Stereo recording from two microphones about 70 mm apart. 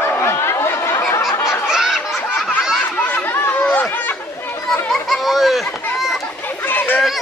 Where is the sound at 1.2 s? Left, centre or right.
Left.